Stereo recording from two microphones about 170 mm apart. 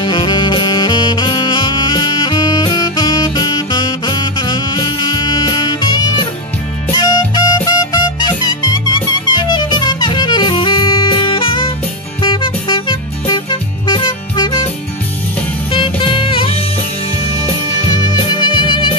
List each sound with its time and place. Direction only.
0.0 s saxophone: 25° left (ahead or behind)
6.9 s music: 25° left (ahead or behind)
15.7 s music: 30° left (ahead or behind)
17.8 s music: 25° left (ahead or behind)